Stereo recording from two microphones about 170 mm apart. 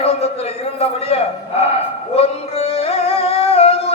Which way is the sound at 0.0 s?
35° left (ahead or behind).